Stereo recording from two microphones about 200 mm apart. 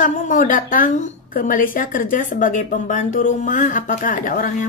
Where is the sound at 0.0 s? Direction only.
40° left (ahead or behind).